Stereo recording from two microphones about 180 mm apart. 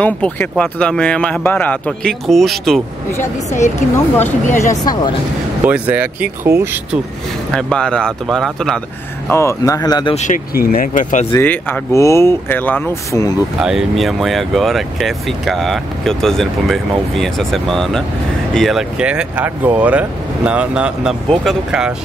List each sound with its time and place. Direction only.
0.0 s speech: 5° left (ahead or behind)
3.2 s a woman's voice: 40° left (ahead or behind)
5.7 s speech: 10° right (ahead or behind)
7.5 s speech: 5° left (ahead or behind)
9.3 s speech: 15° left (ahead or behind)
10.1 s speech: 45° left (ahead or behind)
11.3 s speech: 10° left (ahead or behind)
13.6 s speech: 5° right (ahead or behind)